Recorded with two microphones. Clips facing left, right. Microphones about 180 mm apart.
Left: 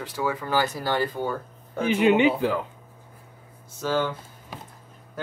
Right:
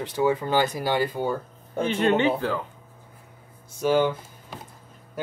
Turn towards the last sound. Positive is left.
turn(degrees=-15)  # may be behind; listen again after turning